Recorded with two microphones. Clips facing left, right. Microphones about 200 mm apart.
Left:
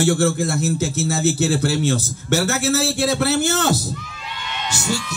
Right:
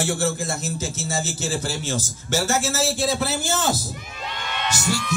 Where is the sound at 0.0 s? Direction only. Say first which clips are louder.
Left 6 dB; 60° left (ahead or behind).